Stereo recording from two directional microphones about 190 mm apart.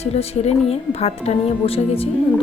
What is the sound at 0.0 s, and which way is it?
A woman's voice, 35° left (ahead or behind).